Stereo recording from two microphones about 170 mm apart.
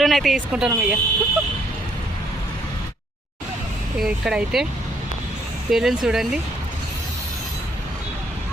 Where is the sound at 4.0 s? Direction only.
5° right (ahead or behind).